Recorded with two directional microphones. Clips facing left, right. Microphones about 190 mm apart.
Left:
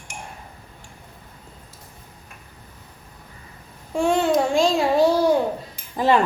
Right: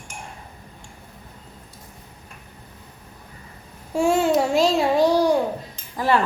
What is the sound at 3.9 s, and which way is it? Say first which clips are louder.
Child singing: right 1 dB; 5° right (ahead or behind).